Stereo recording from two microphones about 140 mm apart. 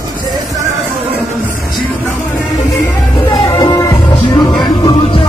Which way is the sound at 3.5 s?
25° left (ahead or behind).